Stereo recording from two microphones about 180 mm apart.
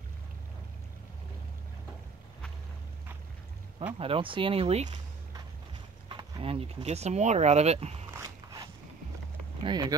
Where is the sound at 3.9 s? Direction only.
30° right (ahead or behind).